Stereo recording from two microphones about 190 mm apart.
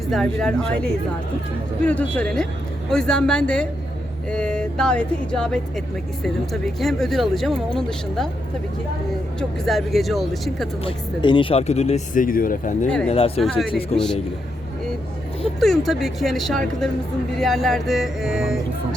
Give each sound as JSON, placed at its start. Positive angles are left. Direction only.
{"t": 0.1, "sound": "speech", "side_deg": 5}
{"t": 1.9, "sound": "speech", "side_deg": 5}
{"t": 9.4, "sound": "speech", "side_deg": 0}
{"t": 10.8, "sound": "speech", "side_deg": 25}
{"t": 13.1, "sound": "speech", "side_deg": 30}
{"t": 13.4, "sound": "speech", "side_deg": 0}
{"t": 15.6, "sound": "speech", "side_deg": 0}